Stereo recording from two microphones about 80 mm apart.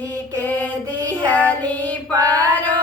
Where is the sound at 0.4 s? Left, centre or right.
Left.